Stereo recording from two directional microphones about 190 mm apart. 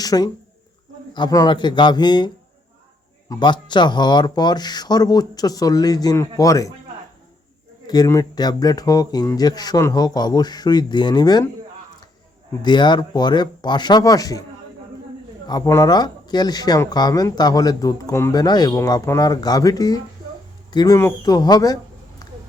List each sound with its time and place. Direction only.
0.0 s speech: 20° left (ahead or behind)
7.9 s speech: 20° left (ahead or behind)
12.6 s speech: 25° left (ahead or behind)
15.4 s speech: 20° left (ahead or behind)
22.2 s a sound: 20° left (ahead or behind)